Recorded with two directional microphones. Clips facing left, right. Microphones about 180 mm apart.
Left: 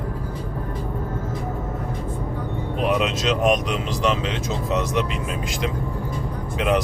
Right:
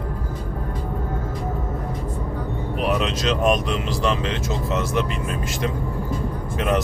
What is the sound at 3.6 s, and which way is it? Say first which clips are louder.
Speech: even; 15° left (ahead or behind).